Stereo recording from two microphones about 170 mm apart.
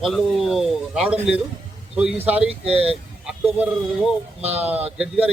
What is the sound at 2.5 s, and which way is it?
Speech, 35° right (ahead or behind).